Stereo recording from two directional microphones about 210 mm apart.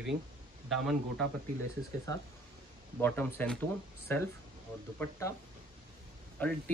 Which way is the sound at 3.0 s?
10° left (ahead or behind).